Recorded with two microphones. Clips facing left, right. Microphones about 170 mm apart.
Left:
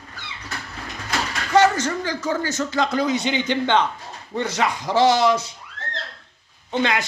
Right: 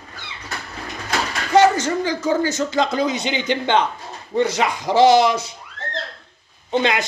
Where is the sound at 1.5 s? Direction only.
15° right (ahead or behind).